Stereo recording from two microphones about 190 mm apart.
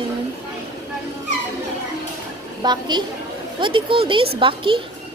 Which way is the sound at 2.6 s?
25° right (ahead or behind).